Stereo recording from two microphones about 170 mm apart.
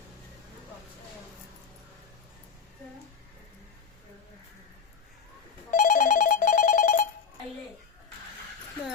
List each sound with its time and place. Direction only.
5.7 s telephone bell ringing: 50° left (ahead or behind)